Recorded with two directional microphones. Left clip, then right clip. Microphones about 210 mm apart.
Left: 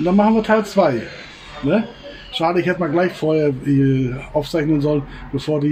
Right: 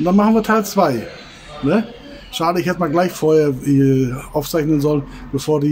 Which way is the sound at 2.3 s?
15° right (ahead or behind).